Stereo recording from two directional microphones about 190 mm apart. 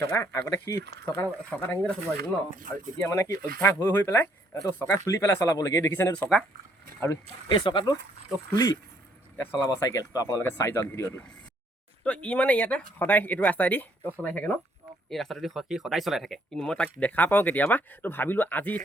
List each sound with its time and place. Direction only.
0.1 s speech: 10° left (ahead or behind)
2.1 s speech: 50° right (ahead or behind)
3.0 s speech: 15° left (ahead or behind)
3.3 s speech: 50° right (ahead or behind)
3.6 s speech: 15° left (ahead or behind)
7.4 s speech: 25° left (ahead or behind); by 18.8 s 10° left (ahead or behind)